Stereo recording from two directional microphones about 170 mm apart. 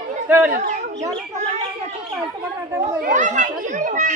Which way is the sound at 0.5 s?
45° right (ahead or behind).